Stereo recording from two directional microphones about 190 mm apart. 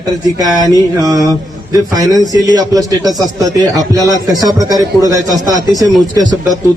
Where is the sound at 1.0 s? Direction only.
20° right (ahead or behind).